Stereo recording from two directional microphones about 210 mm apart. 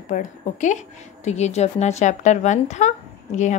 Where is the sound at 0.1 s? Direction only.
35° left (ahead or behind).